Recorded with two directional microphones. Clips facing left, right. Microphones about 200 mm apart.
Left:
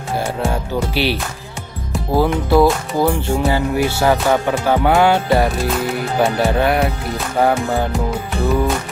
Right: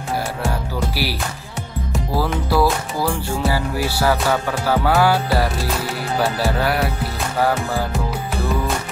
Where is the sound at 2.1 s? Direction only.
20° left (ahead or behind).